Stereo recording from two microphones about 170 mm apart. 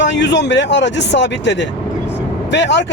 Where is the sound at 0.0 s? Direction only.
90° left.